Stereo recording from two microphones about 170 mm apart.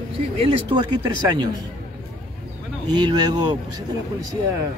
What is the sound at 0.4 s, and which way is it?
Speech, 30° right (ahead or behind).